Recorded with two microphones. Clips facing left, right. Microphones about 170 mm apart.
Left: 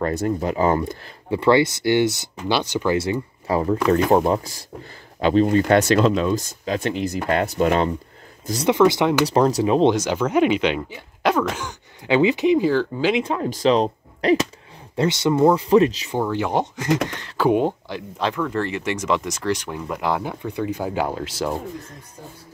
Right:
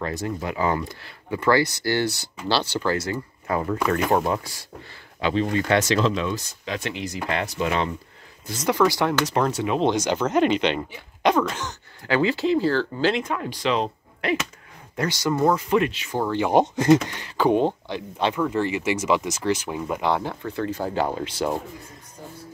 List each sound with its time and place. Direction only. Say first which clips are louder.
0.0 s speech: left 6 dB; 55° left (ahead or behind)
0.4 s speech: left 3 dB; 35° left (ahead or behind)
1.3 s speech: left 4 dB; 25° left (ahead or behind)
3.0 s speech: left 5 dB; 30° left (ahead or behind)
5.8 s speech: left 5 dB; 50° left (ahead or behind)
8.6 s speech: left 4 dB; 20° left (ahead or behind)
9.2 s speech: left 5 dB; 35° left (ahead or behind)
9.8 s speech: left 3 dB; 5° left (ahead or behind)
11.2 s throat clearing: even; 5° left (ahead or behind)
12.1 s speech: left 4 dB; 20° left (ahead or behind)
13.2 s speech: left 6 dB; 30° left (ahead or behind)
15.0 s speech: left 5 dB; 25° left (ahead or behind)
16.1 s speech: even; 10° left (ahead or behind)